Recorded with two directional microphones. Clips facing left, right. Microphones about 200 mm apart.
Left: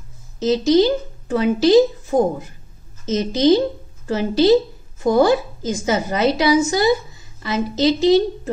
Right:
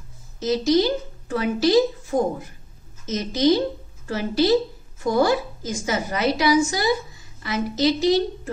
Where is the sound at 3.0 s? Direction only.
25° left (ahead or behind).